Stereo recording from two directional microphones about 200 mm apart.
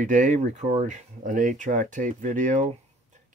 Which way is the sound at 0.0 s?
40° right (ahead or behind).